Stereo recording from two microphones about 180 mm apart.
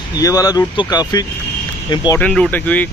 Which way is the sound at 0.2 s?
20° left (ahead or behind).